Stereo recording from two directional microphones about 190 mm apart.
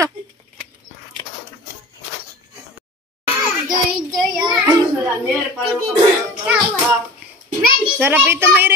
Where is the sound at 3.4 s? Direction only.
20° right (ahead or behind).